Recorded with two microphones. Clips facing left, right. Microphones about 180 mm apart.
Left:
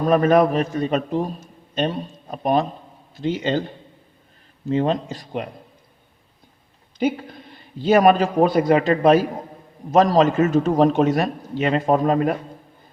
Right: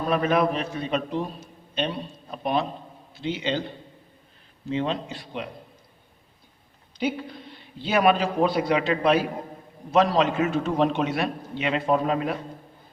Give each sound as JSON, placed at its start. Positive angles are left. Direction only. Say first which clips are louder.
{"t": 0.1, "sound": "a man's voice", "louder": "left 6 dB", "side_deg": 45}
{"t": 4.7, "sound": "a man's voice", "louder": "left 6 dB", "side_deg": 45}
{"t": 7.8, "sound": "a man's voice", "louder": "left 6 dB", "side_deg": 45}